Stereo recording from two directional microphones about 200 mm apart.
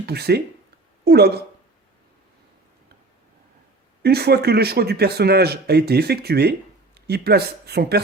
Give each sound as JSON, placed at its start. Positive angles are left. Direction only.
{"t": 0.0, "sound": "speech", "side_deg": -55}
{"t": 4.0, "sound": "speech", "side_deg": -55}